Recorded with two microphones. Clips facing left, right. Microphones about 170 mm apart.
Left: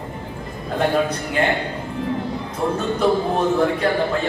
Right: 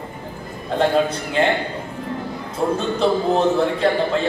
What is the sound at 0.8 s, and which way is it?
Speech, 30° right (ahead or behind).